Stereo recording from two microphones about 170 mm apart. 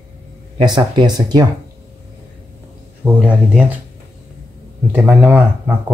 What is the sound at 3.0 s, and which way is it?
Speech, 10° right (ahead or behind).